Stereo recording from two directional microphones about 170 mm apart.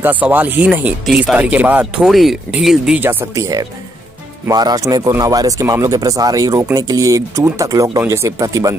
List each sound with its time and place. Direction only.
0.0 s speech: 10° right (ahead or behind)